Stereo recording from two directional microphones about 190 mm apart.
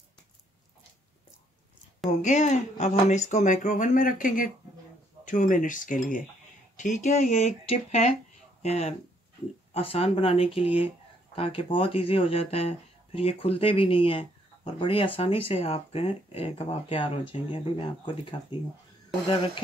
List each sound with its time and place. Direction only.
2.2 s speech: 40° left (ahead or behind)